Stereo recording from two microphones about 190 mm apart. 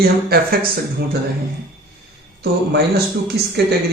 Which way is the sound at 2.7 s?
60° right (ahead or behind).